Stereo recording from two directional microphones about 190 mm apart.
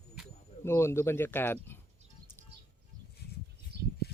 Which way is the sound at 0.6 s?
15° left (ahead or behind).